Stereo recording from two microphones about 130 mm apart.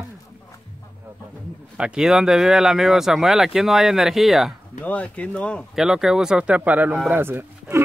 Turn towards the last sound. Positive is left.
turn(degrees=-15)  # may be behind; listen again after turning